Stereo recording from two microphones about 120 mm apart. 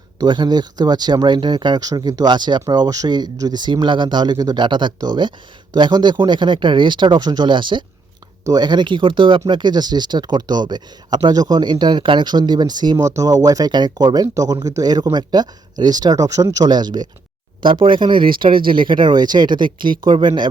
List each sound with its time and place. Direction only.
0.2 s speech: 40° right (ahead or behind)